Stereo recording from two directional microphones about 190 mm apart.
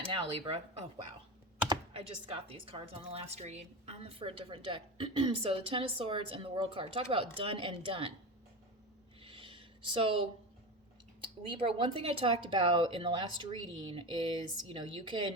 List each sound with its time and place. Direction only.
0.0 s speech: 30° right (ahead or behind)
9.2 s a sound: 30° right (ahead or behind)
11.6 s speech: 30° right (ahead or behind)